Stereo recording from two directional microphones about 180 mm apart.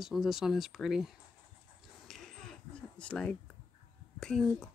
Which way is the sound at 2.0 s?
Centre (ahead or behind).